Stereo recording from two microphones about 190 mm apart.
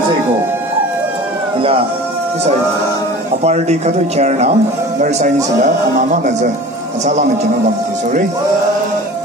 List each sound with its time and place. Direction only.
3.4 s speech: 35° right (ahead or behind)